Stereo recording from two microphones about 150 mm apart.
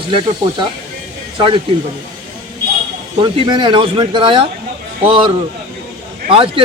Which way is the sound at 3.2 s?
30° right (ahead or behind).